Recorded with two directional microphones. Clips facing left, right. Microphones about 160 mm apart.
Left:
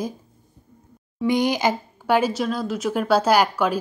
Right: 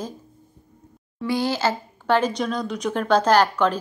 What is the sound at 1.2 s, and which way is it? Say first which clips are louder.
A woman's voice: left 3 dB; 15° left (ahead or behind).